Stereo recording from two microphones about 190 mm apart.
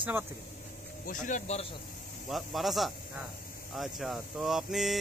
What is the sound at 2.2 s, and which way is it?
Speech, centre (ahead or behind).